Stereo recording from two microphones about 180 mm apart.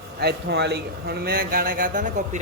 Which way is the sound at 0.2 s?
65° right (ahead or behind).